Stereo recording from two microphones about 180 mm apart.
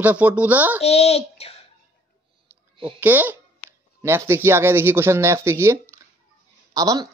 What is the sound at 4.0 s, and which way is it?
Speech, 15° right (ahead or behind).